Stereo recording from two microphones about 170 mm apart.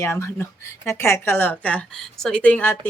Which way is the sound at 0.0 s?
15° left (ahead or behind).